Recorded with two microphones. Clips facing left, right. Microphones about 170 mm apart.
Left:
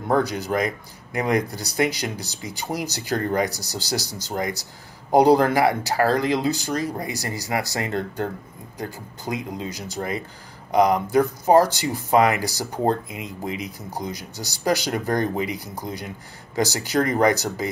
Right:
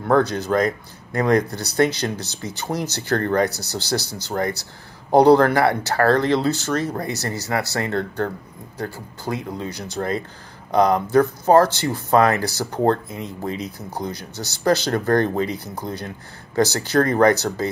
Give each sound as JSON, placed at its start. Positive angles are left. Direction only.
{"t": 0.1, "sound": "speech", "side_deg": 15}
{"t": 10.0, "sound": "speech", "side_deg": -55}
{"t": 10.7, "sound": "speech", "side_deg": 10}